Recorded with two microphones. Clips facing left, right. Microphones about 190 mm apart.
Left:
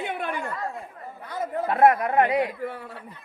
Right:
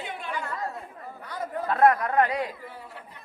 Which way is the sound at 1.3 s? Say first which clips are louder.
Left 4 dB; 10° left (ahead or behind).